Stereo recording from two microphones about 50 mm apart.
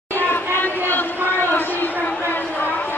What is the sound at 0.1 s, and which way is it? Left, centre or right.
Chatter, left.